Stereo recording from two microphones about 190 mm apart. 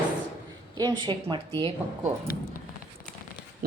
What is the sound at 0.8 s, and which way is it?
Speech, 20° right (ahead or behind).